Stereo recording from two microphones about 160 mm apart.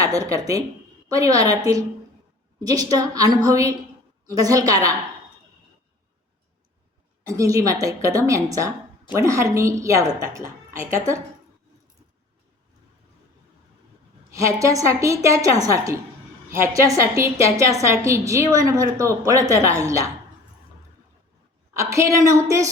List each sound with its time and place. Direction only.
0.0 s a woman's voice: 20° right (ahead or behind)
7.3 s a woman's voice: 20° right (ahead or behind)
14.3 s a woman's voice: 20° right (ahead or behind)
21.7 s a woman's voice: 20° right (ahead or behind)